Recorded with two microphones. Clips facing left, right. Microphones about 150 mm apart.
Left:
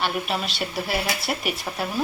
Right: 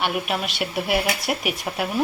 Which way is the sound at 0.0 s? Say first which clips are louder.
Right 1 dB; 10° right (ahead or behind).